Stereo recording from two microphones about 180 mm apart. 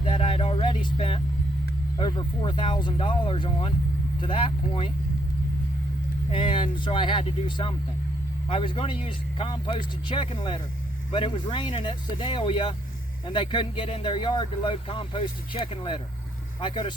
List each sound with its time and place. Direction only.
0.0 s a sound: 30° left (ahead or behind)
2.0 s speech: 25° left (ahead or behind)
6.3 s speech: 30° left (ahead or behind)